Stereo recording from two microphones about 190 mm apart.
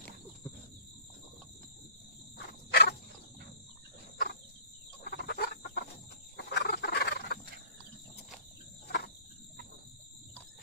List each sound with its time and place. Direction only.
2.3 s cricket: 60° left (ahead or behind)
5.0 s fowl: 60° left (ahead or behind)